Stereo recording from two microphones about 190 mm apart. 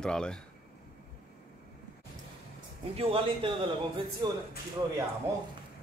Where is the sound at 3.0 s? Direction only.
30° right (ahead or behind).